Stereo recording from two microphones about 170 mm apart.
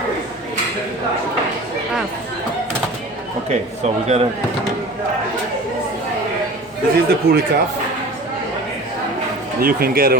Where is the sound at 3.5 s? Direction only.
40° right (ahead or behind).